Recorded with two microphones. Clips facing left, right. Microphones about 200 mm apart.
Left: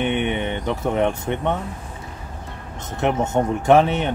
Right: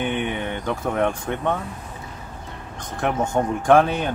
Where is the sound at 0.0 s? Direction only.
25° left (ahead or behind).